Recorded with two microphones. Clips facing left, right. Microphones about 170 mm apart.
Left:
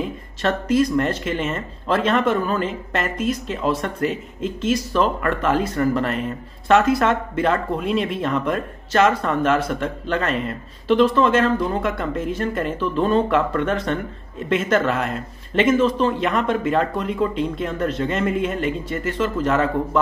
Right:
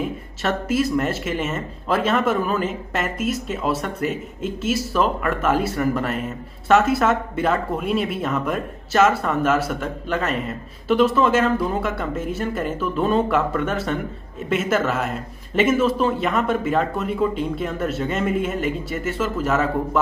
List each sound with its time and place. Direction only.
0.4 s speech: 5° right (ahead or behind)